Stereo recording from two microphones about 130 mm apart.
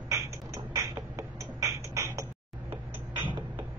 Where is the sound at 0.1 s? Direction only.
25° right (ahead or behind).